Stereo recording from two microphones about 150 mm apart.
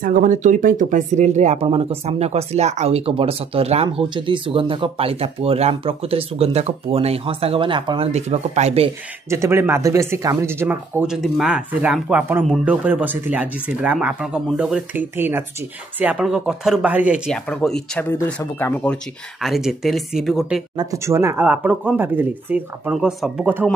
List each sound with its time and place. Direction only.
0.0 s speech: 60° right (ahead or behind); by 8.1 s 35° right (ahead or behind)
8.1 s speech: 45° right (ahead or behind)
9.3 s speech: 15° right (ahead or behind)
17.3 s speech: 5° left (ahead or behind)
18.1 s speech: 15° left (ahead or behind)
19.4 s speech: centre (ahead or behind)
20.7 s speech: 25° right (ahead or behind); by 23.7 s 5° right (ahead or behind)